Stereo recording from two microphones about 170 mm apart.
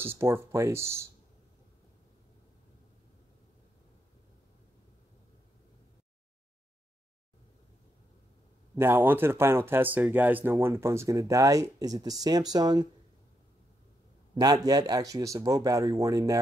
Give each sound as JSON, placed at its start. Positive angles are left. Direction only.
{"t": 0.0, "sound": "speech", "side_deg": -15}
{"t": 8.7, "sound": "speech", "side_deg": -15}
{"t": 14.3, "sound": "speech", "side_deg": -25}